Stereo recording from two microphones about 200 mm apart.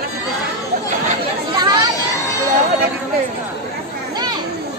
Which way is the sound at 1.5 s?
20° right (ahead or behind).